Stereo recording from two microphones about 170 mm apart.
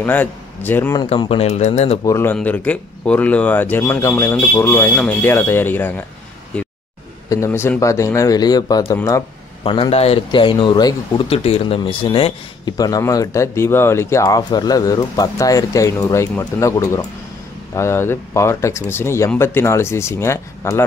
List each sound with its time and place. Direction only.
0.0 s speech: 10° left (ahead or behind)
1.0 s speech: 35° left (ahead or behind)
2.0 s speech: 15° left (ahead or behind)
7.2 s a man's voice: 15° left (ahead or behind)
9.6 s speech: 35° left (ahead or behind)
11.2 s a man's voice: 35° left (ahead or behind); by 20.8 s 15° left (ahead or behind)